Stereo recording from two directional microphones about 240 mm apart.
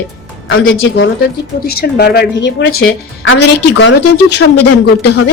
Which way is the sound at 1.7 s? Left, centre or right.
Left.